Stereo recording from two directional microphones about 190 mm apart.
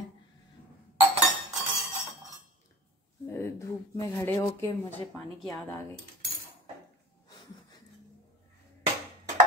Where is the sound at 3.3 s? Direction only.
15° left (ahead or behind).